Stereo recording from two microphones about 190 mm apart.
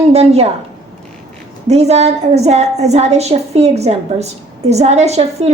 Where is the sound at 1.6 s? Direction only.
35° right (ahead or behind).